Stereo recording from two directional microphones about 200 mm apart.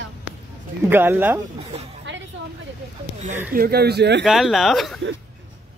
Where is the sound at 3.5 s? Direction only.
50° right (ahead or behind).